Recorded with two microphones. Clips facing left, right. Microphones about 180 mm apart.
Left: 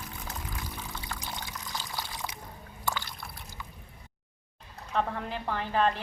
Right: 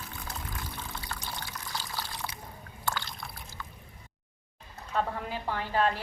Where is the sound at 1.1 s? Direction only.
15° left (ahead or behind).